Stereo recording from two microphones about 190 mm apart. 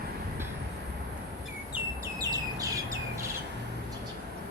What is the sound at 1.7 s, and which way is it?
Bird, 15° right (ahead or behind).